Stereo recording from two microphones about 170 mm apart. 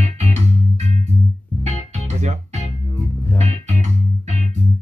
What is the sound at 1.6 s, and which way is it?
Music, 40° right (ahead or behind).